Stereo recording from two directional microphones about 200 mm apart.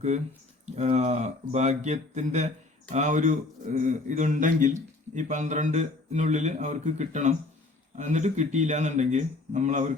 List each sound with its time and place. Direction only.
0.6 s speech: 35° right (ahead or behind)